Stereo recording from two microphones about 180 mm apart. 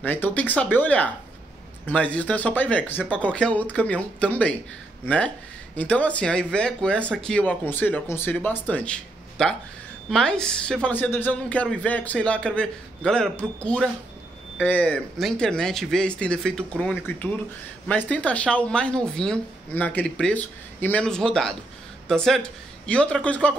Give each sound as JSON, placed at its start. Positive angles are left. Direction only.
{"t": 0.0, "sound": "a woman's voice", "side_deg": 10}